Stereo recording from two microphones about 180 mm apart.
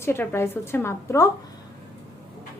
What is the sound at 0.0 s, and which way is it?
A woman's voice, 15° left (ahead or behind).